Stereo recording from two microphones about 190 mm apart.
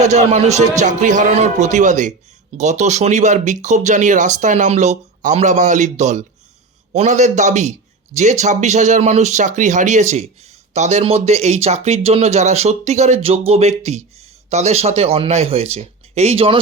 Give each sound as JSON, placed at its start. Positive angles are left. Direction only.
{"t": 0.0, "sound": "speech", "side_deg": -35}